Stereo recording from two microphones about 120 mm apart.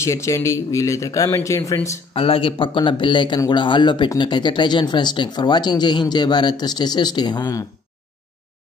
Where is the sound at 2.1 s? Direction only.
50° left (ahead or behind); by 7.6 s 35° left (ahead or behind).